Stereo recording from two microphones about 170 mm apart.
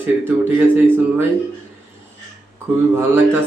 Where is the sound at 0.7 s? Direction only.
10° right (ahead or behind).